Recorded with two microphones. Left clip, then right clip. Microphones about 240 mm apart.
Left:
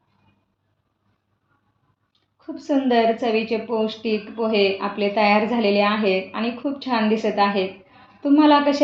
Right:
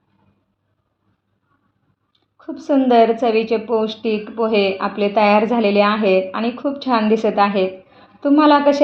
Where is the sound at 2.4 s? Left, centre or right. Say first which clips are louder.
Right 5 dB; right.